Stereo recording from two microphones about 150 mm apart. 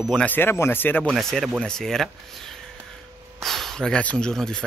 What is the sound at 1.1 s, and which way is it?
Speech, centre (ahead or behind).